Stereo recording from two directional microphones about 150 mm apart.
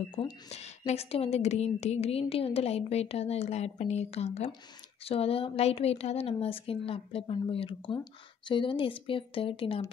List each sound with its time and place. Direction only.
0.1 s a woman's voice: 45° left (ahead or behind)